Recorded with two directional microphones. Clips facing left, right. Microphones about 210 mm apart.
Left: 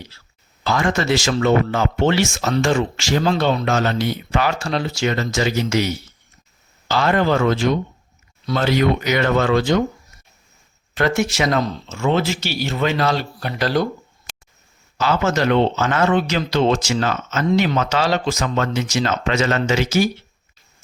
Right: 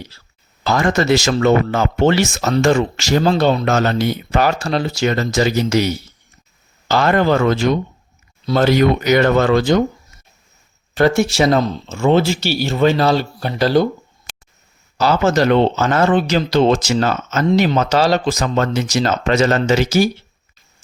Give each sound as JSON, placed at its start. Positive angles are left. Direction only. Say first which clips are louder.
{"t": 0.6, "sound": "speech", "louder": "right 3 dB", "side_deg": -40}
{"t": 10.9, "sound": "speech", "louder": "right 5 dB", "side_deg": -35}
{"t": 14.9, "sound": "speech", "louder": "right 4 dB", "side_deg": -40}